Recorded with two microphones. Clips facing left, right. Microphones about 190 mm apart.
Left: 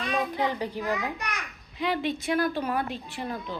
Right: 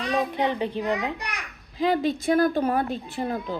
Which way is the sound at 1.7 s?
40° right (ahead or behind).